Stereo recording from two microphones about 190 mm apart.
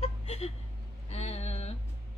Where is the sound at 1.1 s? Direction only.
35° left (ahead or behind).